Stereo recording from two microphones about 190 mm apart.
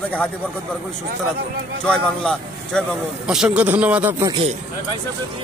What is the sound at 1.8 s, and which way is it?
A man's voice, 5° left (ahead or behind).